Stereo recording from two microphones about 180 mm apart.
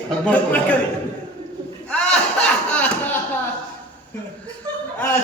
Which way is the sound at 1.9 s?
5° left (ahead or behind).